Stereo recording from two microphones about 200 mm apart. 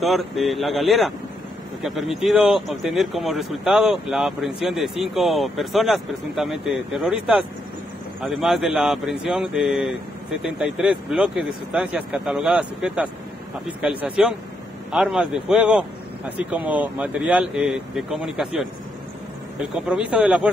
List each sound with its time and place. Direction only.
0.0 s speech: centre (ahead or behind)
19.7 s speech: 5° right (ahead or behind)